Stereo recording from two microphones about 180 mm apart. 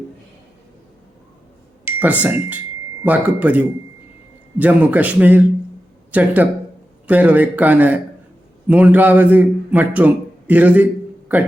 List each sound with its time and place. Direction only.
1.8 s a man's voice: 10° right (ahead or behind)